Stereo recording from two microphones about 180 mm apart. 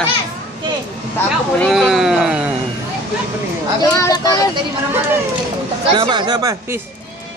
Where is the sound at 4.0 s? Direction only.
20° left (ahead or behind).